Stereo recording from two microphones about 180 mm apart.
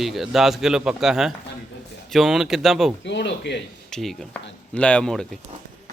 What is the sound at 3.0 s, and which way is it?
Speech, 75° left (ahead or behind).